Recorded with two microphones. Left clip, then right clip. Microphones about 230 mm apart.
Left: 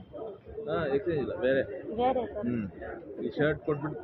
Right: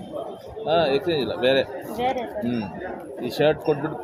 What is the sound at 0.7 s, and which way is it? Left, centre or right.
Speech, right.